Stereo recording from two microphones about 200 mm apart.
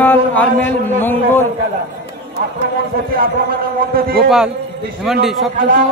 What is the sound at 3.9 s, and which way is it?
Speech, 50° right (ahead or behind).